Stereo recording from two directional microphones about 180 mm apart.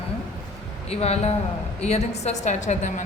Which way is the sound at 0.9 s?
35° left (ahead or behind).